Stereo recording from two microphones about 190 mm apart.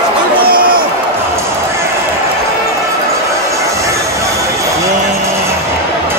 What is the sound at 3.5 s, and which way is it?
Music, 15° right (ahead or behind).